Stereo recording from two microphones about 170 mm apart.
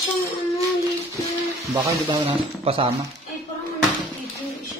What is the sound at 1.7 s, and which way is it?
Speech, 25° right (ahead or behind).